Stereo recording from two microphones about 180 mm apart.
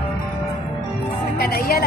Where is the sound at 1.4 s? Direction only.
55° left (ahead or behind).